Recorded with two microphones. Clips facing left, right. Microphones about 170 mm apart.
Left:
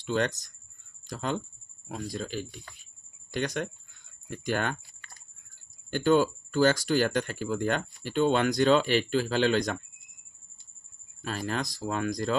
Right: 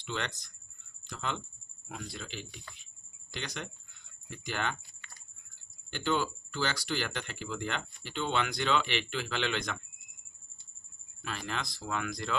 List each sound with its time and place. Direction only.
0.0 s speech: 45° left (ahead or behind)
11.2 s speech: 40° left (ahead or behind)